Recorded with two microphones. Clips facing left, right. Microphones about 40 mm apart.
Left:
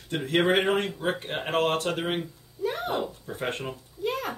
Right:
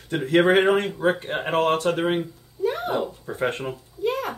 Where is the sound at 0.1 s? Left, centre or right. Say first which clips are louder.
Right 5 dB; right.